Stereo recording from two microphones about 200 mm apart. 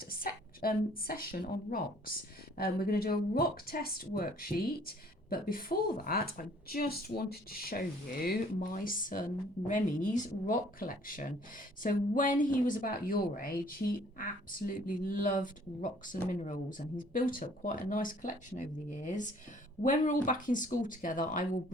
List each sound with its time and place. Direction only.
0.1 s a woman's voice: 45° left (ahead or behind)